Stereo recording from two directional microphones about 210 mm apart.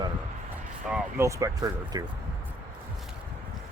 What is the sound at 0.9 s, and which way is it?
Speech, 10° right (ahead or behind).